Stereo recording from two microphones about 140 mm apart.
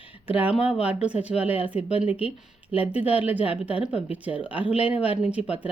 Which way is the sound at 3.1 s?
45° left (ahead or behind).